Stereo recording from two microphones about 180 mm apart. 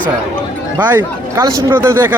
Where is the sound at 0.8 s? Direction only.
10° right (ahead or behind).